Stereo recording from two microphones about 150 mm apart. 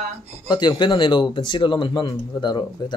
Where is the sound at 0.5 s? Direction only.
30° left (ahead or behind).